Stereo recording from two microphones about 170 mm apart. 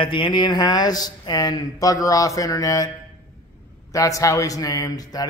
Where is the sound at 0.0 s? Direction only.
30° left (ahead or behind).